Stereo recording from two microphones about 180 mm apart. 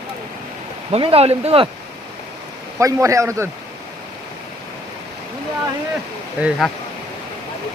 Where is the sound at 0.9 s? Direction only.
30° right (ahead or behind).